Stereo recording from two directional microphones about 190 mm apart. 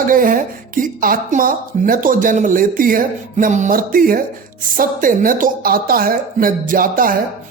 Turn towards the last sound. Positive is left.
turn(degrees=-50)  # may be behind; listen again after turning